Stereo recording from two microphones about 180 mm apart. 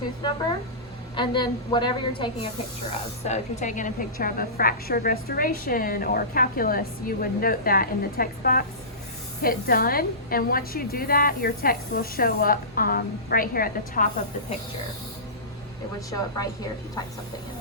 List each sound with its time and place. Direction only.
1.1 s a woman's voice: 25° left (ahead or behind)
3.2 s a woman's voice: 40° left (ahead or behind)
16.0 s a woman's voice: 20° left (ahead or behind)